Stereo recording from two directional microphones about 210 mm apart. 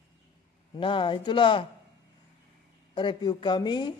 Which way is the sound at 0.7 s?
25° left (ahead or behind).